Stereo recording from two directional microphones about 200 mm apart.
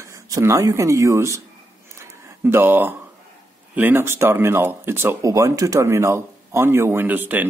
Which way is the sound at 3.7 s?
10° right (ahead or behind).